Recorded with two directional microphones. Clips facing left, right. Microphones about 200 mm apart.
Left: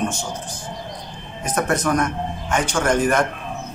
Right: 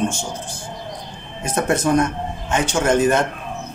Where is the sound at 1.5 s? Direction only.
25° right (ahead or behind).